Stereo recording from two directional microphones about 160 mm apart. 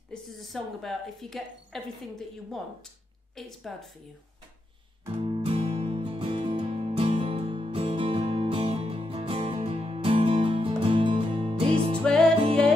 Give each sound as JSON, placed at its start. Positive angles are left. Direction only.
{"t": 0.1, "sound": "speech", "side_deg": 0}
{"t": 5.2, "sound": "music", "side_deg": -35}
{"t": 12.0, "sound": "music", "side_deg": 5}